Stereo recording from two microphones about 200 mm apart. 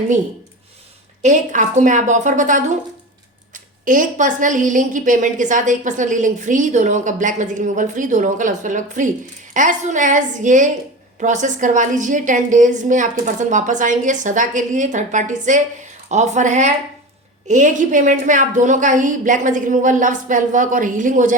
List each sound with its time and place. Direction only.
1.2 s a woman's voice: 35° right (ahead or behind)